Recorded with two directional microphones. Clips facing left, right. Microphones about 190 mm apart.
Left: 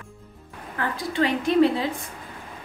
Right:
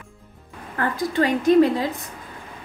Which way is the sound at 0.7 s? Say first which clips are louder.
Right 3 dB; 45° right (ahead or behind).